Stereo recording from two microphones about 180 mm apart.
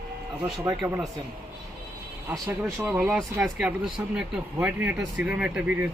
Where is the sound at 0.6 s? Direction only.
20° right (ahead or behind).